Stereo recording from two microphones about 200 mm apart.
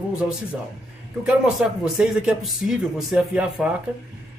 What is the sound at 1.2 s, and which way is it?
Speech, 5° right (ahead or behind).